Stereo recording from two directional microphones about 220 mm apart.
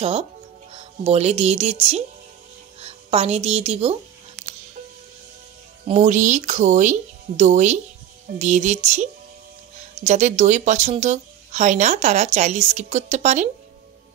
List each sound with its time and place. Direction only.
0.0 s a woman's voice: 30° right (ahead or behind)
4.4 s music: centre (ahead or behind)
5.9 s speech: 35° right (ahead or behind)